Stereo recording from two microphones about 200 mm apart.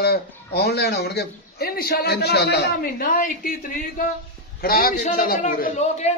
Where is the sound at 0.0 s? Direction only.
50° left (ahead or behind).